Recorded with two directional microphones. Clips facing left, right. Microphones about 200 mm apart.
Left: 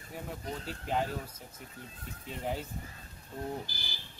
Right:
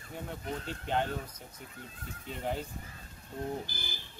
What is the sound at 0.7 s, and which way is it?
Speech, 5° left (ahead or behind).